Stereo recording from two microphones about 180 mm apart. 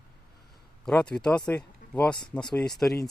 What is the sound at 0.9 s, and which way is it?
Speech, 5° left (ahead or behind).